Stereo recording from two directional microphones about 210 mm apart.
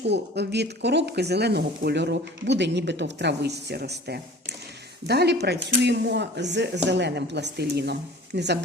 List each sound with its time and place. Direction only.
0.0 s speech: 55° right (ahead or behind)